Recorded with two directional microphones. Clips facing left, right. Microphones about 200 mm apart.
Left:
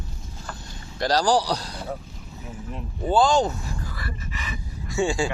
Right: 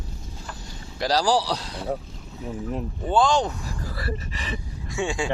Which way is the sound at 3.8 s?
35° right (ahead or behind).